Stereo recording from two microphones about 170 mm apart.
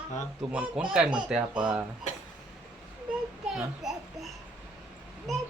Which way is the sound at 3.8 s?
Centre (ahead or behind).